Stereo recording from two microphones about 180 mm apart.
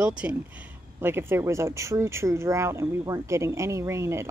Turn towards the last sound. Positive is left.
turn(degrees=-15)  # may be behind; listen again after turning